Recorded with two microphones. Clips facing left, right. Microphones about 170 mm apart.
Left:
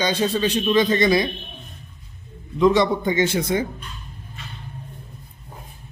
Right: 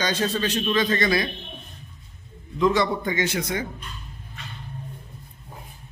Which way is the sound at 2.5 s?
20° left (ahead or behind).